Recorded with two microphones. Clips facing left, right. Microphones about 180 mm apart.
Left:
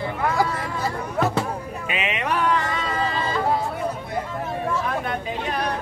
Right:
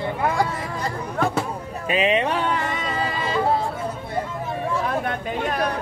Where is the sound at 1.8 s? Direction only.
35° right (ahead or behind).